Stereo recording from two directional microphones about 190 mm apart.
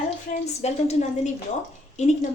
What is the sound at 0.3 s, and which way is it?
A woman's voice, 35° left (ahead or behind).